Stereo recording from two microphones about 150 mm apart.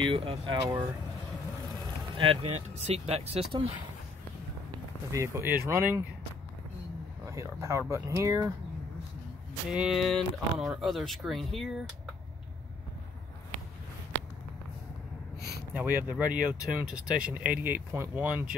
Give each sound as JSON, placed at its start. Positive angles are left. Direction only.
{"t": 0.0, "sound": "speech", "side_deg": -35}
{"t": 2.1, "sound": "speech", "side_deg": -40}
{"t": 5.1, "sound": "speech", "side_deg": -20}
{"t": 7.2, "sound": "speech", "side_deg": -20}
{"t": 9.7, "sound": "speech", "side_deg": -5}
{"t": 15.7, "sound": "speech", "side_deg": -15}